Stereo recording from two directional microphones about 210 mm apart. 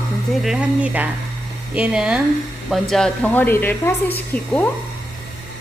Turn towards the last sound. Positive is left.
turn(degrees=10)  # may be behind; listen again after turning